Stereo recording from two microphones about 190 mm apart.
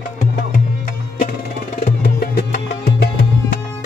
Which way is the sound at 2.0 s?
55° left (ahead or behind).